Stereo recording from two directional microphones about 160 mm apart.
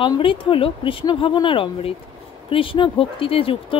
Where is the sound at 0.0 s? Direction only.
30° left (ahead or behind).